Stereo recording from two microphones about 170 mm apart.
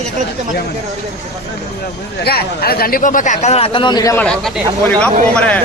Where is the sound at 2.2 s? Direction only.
65° left (ahead or behind); by 4.1 s 25° left (ahead or behind).